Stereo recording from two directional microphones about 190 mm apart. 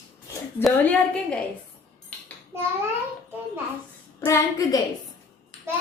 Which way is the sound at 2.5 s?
10° right (ahead or behind).